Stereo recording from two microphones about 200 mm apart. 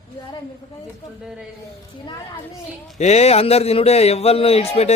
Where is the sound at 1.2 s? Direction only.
5° right (ahead or behind).